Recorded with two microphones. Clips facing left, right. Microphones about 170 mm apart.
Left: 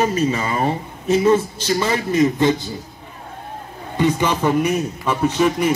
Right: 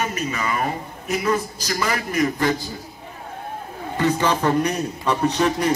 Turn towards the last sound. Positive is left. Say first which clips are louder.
# left 2 dB
turn(degrees=10)  # may be behind; listen again after turning